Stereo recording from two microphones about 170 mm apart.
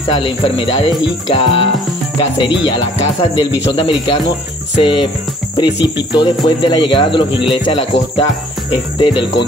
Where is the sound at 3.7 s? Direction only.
30° left (ahead or behind).